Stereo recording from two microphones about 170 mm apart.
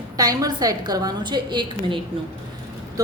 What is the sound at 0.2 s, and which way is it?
A woman's voice, 20° right (ahead or behind).